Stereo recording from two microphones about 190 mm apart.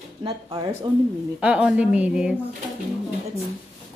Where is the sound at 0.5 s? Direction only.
30° right (ahead or behind).